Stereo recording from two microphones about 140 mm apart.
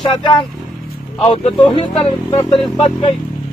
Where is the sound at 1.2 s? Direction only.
45° left (ahead or behind).